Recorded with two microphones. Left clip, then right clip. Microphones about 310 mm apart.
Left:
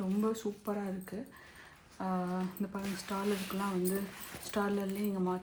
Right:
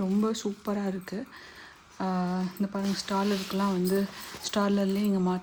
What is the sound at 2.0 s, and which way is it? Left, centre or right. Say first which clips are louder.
A woman's voice: right 5 dB; right.